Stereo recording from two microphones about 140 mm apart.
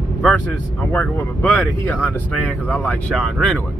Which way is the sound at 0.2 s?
10° left (ahead or behind).